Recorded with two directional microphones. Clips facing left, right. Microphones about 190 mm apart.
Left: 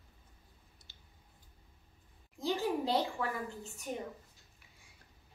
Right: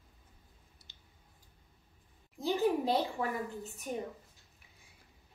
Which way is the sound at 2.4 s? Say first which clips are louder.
Right 3 dB; 15° right (ahead or behind).